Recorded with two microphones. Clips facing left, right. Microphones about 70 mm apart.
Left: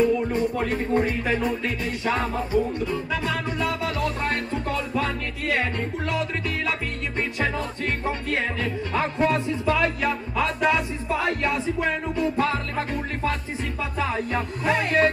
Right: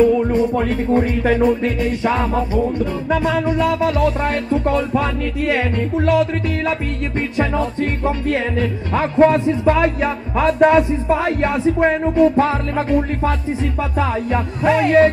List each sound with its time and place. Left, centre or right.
0.0 s music: right